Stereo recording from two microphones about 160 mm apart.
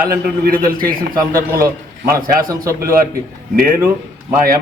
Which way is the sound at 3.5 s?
65° right (ahead or behind).